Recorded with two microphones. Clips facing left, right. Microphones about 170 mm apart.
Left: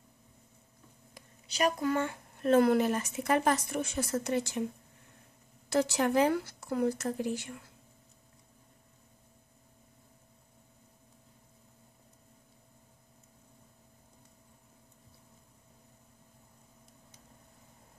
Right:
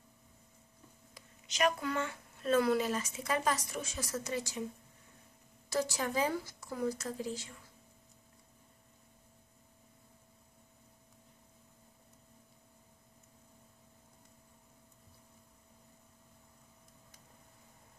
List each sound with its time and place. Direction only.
1.5 s speech: 40° left (ahead or behind); by 4.6 s 60° left (ahead or behind)
5.7 s speech: 65° left (ahead or behind)